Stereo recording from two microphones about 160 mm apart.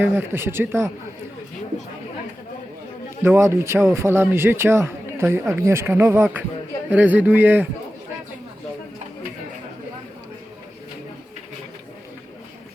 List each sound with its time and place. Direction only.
0.0 s a man's voice: 15° right (ahead or behind)
3.2 s a man's voice: 15° right (ahead or behind)